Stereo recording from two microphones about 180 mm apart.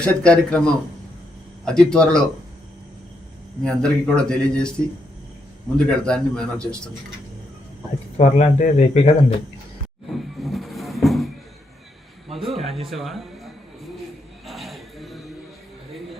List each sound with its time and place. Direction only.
0.0 s a man's voice: 5° left (ahead or behind)
3.6 s a man's voice: 5° left (ahead or behind)
5.7 s a man's voice: 5° left (ahead or behind)
8.2 s speech: 40° left (ahead or behind)
10.1 s music: centre (ahead or behind)
12.3 s speech: centre (ahead or behind)
14.4 s a sound: centre (ahead or behind)